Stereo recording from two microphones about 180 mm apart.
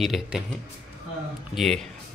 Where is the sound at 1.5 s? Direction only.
Centre (ahead or behind).